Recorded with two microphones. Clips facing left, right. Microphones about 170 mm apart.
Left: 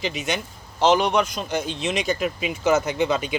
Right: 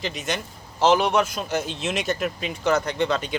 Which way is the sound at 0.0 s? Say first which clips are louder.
Left 2 dB; centre (ahead or behind).